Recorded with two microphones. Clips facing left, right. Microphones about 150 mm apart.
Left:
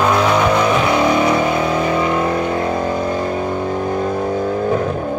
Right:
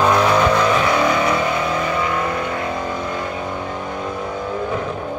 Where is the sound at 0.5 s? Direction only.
15° left (ahead or behind); by 2.7 s 30° left (ahead or behind).